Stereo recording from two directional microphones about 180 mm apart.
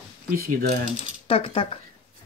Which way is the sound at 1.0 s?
30° left (ahead or behind).